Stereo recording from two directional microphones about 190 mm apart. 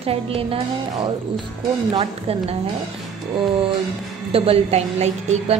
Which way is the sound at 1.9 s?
25° right (ahead or behind).